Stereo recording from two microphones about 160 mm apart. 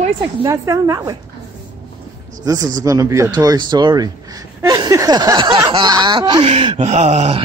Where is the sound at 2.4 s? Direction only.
25° right (ahead or behind).